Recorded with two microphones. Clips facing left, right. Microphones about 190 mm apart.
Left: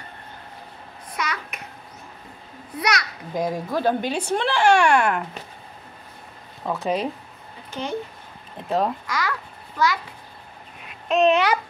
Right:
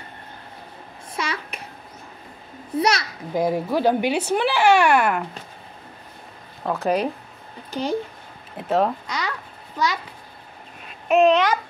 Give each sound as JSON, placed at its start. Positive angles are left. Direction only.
{"t": 1.1, "sound": "babbling", "side_deg": -30}
{"t": 2.8, "sound": "a child's voice", "side_deg": -30}
{"t": 3.3, "sound": "speech", "side_deg": -10}
{"t": 6.6, "sound": "speech", "side_deg": 0}
{"t": 7.7, "sound": "speech", "side_deg": -35}
{"t": 8.6, "sound": "speech", "side_deg": 0}
{"t": 9.0, "sound": "speech", "side_deg": -20}
{"t": 11.2, "sound": "a child's voice", "side_deg": 10}